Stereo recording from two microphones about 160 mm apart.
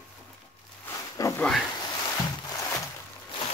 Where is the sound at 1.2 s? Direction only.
20° left (ahead or behind).